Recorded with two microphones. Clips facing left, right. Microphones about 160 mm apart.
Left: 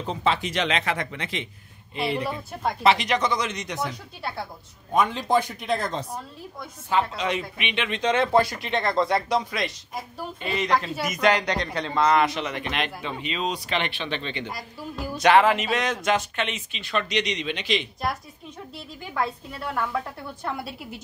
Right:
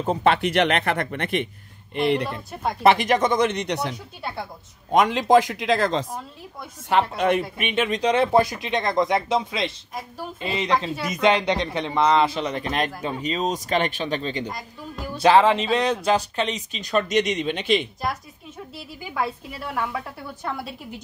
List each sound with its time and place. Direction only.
0.0 s speech: 55° right (ahead or behind)
2.8 s speech: 50° right (ahead or behind); by 3.9 s 70° right (ahead or behind)
4.9 s speech: 85° right
6.9 s speech: 60° right (ahead or behind); by 8.1 s 40° right (ahead or behind)
8.2 s speech: 20° right (ahead or behind)
12.2 s speech: 30° right (ahead or behind)
14.5 s speech: 5° left (ahead or behind)
15.1 s speech: 30° right (ahead or behind); by 17.8 s 50° right (ahead or behind)
19.1 s a woman's voice: 5° right (ahead or behind)